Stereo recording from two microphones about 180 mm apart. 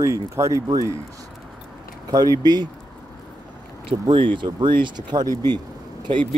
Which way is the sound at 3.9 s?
30° right (ahead or behind).